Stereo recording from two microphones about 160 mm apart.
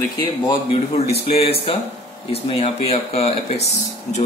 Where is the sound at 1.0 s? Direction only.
40° left (ahead or behind).